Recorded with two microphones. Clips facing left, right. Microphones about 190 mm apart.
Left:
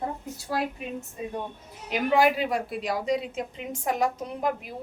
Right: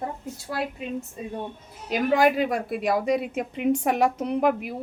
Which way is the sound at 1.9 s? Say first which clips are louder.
Right 2 dB; 45° right (ahead or behind).